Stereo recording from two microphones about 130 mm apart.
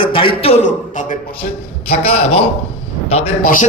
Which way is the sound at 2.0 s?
50° left (ahead or behind).